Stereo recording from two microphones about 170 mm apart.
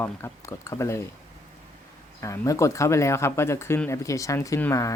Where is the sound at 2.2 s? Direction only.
20° left (ahead or behind).